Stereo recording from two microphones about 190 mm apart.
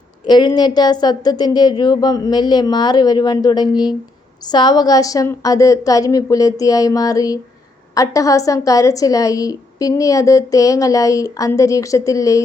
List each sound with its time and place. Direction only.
0.3 s a woman's voice: 20° left (ahead or behind)